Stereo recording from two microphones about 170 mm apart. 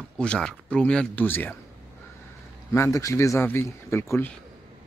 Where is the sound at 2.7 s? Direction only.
15° left (ahead or behind).